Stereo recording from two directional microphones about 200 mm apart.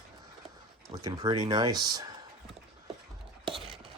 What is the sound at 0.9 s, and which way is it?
Speech, 20° right (ahead or behind).